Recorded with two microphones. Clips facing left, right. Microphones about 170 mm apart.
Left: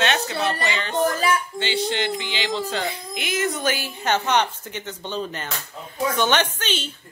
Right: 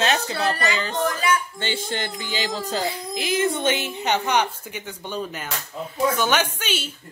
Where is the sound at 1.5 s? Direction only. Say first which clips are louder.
Left 4 dB; 50° right (ahead or behind).